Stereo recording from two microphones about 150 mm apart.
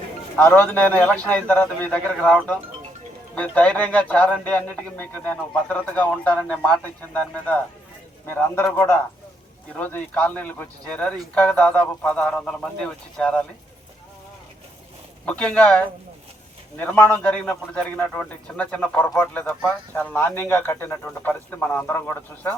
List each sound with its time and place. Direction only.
0.3 s speech: 10° left (ahead or behind)
15.3 s speech: 10° left (ahead or behind)